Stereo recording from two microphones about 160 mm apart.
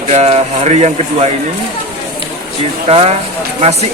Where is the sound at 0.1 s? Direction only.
40° right (ahead or behind).